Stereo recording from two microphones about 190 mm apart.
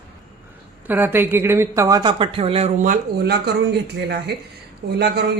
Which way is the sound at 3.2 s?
60° right (ahead or behind).